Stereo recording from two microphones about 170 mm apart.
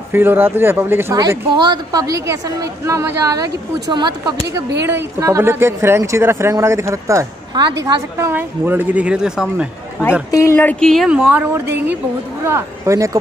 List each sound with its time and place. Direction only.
0.1 s a woman's voice: 15° right (ahead or behind)
10.3 s a woman's voice: 15° left (ahead or behind); by 13.2 s 20° right (ahead or behind)